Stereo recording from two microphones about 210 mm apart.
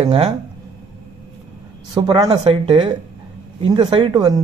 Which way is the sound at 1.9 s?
20° right (ahead or behind).